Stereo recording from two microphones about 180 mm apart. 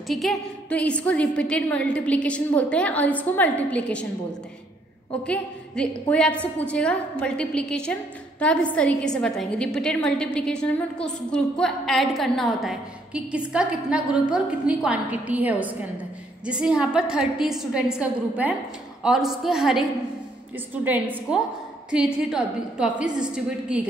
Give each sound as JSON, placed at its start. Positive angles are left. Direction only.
{"t": 0.1, "sound": "a woman's voice", "side_deg": 0}
{"t": 5.2, "sound": "a woman's voice", "side_deg": 5}